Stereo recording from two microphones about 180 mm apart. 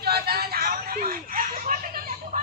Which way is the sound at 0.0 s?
60° right (ahead or behind).